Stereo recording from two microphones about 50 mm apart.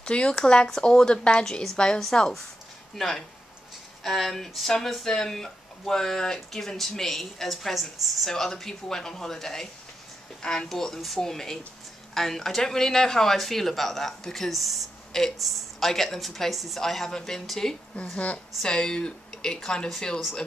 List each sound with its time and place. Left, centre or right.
0.0 s a woman's voice: centre
17.9 s a woman's voice: left